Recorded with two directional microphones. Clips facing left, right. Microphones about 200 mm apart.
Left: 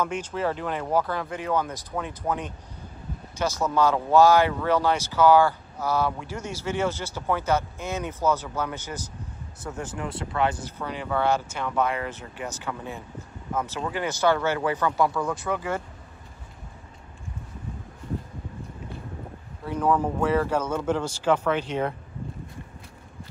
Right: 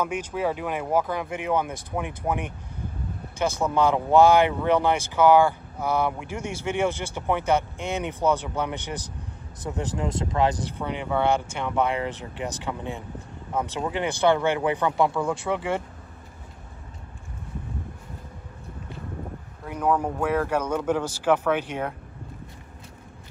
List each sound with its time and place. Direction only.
0.0 s speech: 10° right (ahead or behind)
3.5 s speech: 15° right (ahead or behind); by 10.6 s 35° right (ahead or behind)
10.9 s speech: 20° right (ahead or behind)
13.5 s speech: 15° right (ahead or behind)
19.7 s speech: 10° right (ahead or behind)